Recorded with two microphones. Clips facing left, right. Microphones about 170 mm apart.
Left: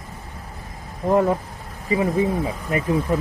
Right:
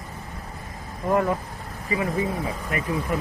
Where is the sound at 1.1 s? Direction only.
30° left (ahead or behind).